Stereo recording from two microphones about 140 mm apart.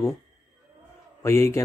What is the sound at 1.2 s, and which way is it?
Speech, 20° left (ahead or behind).